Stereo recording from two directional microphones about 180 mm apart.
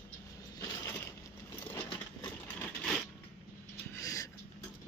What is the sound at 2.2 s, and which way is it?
Vehicle, 10° left (ahead or behind).